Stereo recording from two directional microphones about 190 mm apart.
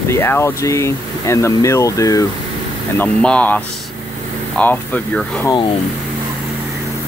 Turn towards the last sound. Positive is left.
turn(degrees=5)  # may be behind; listen again after turning